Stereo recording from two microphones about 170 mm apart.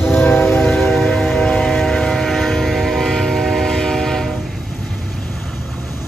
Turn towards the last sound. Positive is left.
turn(degrees=0)  # may be behind; listen again after turning